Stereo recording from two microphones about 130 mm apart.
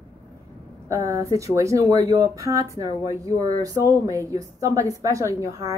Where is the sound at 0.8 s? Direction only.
25° right (ahead or behind).